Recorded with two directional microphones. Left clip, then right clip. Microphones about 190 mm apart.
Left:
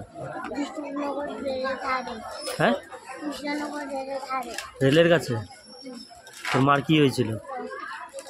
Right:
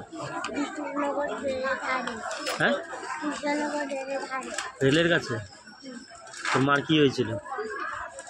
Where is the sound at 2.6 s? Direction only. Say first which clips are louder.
Left 2 dB; 40° left (ahead or behind).